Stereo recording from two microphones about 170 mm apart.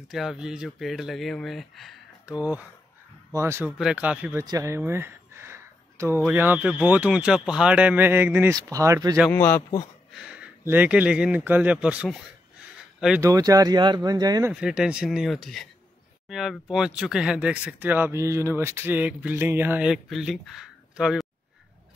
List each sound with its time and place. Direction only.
0.1 s speech: centre (ahead or behind)
3.7 s speech: 5° right (ahead or behind)
9.3 s a man's voice: 10° left (ahead or behind)
10.2 s speech: 5° right (ahead or behind)
13.2 s speech: 20° right (ahead or behind)
14.5 s speech: 5° right (ahead or behind)